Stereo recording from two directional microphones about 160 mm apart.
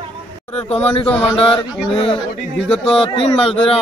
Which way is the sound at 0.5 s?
40° left (ahead or behind).